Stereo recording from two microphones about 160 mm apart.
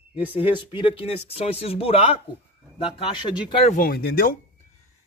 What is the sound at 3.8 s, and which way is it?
Speech, 70° left (ahead or behind).